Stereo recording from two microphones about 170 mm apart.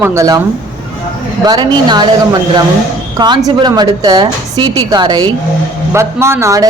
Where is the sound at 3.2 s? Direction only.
25° right (ahead or behind).